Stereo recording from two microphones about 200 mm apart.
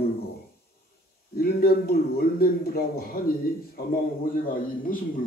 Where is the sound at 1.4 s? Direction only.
50° left (ahead or behind).